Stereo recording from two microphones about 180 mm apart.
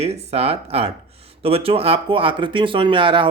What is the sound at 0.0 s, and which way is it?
A man's voice, 35° right (ahead or behind).